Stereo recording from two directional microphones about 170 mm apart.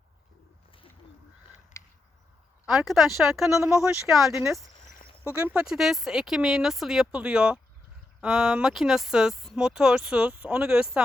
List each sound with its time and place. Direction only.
1.7 s a sound: 15° left (ahead or behind)
2.6 s speech: centre (ahead or behind)
5.2 s speech: 15° right (ahead or behind)